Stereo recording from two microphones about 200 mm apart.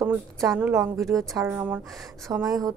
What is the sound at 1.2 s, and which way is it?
Speech, 15° right (ahead or behind).